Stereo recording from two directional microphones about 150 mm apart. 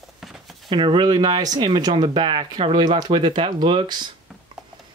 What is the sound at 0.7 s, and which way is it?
Speech, 35° right (ahead or behind).